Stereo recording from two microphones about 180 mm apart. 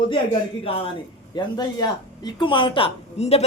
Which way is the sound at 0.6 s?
30° left (ahead or behind).